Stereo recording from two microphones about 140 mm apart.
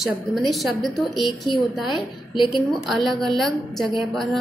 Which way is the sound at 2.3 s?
35° left (ahead or behind).